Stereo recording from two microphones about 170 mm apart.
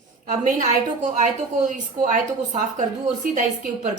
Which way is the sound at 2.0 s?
50° right (ahead or behind).